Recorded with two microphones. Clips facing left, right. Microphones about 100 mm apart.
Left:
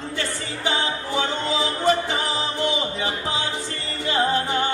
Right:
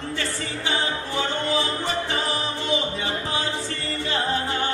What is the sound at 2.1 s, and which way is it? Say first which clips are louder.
Music: left 1 dB; 15° left (ahead or behind).